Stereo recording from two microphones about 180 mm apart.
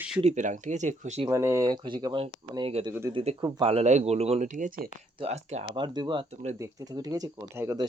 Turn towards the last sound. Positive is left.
turn(degrees=-15)  # may be behind; listen again after turning